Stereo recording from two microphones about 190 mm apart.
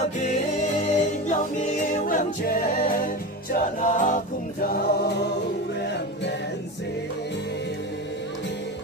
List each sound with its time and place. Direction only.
0.2 s music: 40° left (ahead or behind)
3.5 s a capella: 45° left (ahead or behind)